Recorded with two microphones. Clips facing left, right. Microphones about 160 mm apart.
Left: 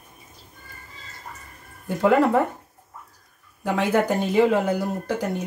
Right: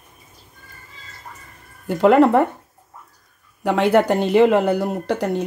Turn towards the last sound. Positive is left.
turn(degrees=-70)  # may be behind; listen again after turning